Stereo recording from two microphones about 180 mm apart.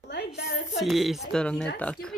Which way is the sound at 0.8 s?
Centre (ahead or behind).